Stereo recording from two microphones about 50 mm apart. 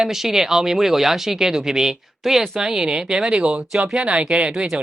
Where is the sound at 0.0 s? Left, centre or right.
Centre.